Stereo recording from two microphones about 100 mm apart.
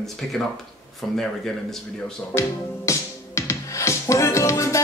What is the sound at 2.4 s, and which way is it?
Music, 30° left (ahead or behind).